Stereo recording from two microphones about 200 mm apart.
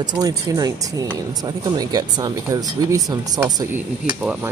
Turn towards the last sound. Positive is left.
turn(degrees=-5)  # may be behind; listen again after turning